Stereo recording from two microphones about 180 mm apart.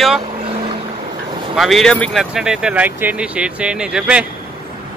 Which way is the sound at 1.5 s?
Centre (ahead or behind).